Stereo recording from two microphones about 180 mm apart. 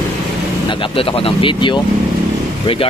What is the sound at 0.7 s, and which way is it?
Speech, 30° left (ahead or behind).